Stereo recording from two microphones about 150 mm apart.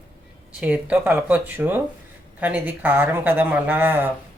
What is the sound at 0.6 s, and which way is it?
Speech, 10° right (ahead or behind).